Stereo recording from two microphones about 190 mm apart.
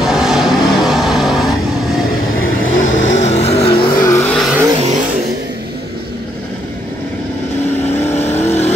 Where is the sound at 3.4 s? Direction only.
30° left (ahead or behind).